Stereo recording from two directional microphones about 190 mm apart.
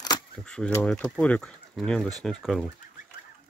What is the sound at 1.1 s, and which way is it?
Speech, 5° left (ahead or behind).